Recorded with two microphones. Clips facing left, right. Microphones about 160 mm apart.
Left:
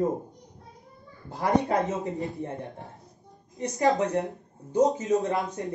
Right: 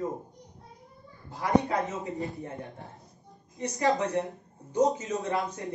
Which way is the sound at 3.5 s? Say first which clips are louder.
Left 3 dB; 20° left (ahead or behind).